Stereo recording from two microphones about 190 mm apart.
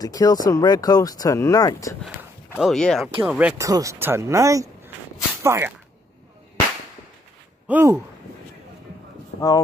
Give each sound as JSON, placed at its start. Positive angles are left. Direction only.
{"t": 0.0, "sound": "speech", "side_deg": 20}
{"t": 2.5, "sound": "speech", "side_deg": 0}
{"t": 3.2, "sound": "speech", "side_deg": -5}
{"t": 7.6, "sound": "speech", "side_deg": -10}